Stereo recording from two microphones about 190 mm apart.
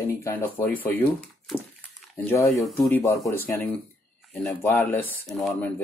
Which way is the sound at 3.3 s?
10° left (ahead or behind).